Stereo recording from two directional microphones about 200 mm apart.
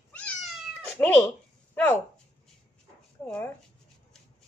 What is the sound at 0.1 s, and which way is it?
Cat, 5° left (ahead or behind).